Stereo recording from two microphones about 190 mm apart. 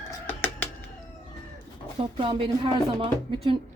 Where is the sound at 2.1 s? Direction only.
25° right (ahead or behind).